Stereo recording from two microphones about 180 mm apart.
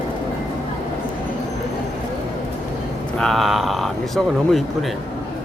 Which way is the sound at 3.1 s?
Centre (ahead or behind).